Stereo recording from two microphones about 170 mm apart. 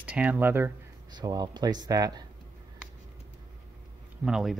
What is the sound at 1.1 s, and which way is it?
Speech, 25° right (ahead or behind).